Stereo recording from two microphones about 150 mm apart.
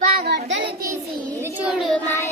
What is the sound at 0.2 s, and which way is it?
Child singing, 90° right.